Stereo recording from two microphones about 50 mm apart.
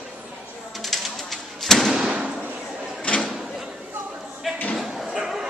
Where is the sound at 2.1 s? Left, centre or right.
Centre.